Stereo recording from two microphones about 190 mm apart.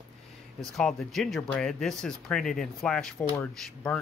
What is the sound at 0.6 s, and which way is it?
Speech, centre (ahead or behind).